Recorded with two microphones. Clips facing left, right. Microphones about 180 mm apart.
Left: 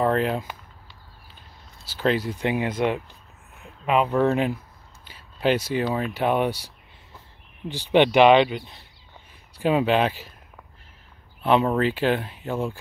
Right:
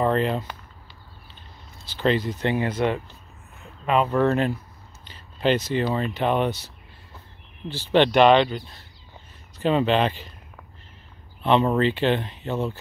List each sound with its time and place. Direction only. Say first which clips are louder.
0.0 s a sound: even; 5° left (ahead or behind)
1.9 s speech: right 1 dB; 10° left (ahead or behind)
11.4 s speech: right 1 dB; 5° left (ahead or behind)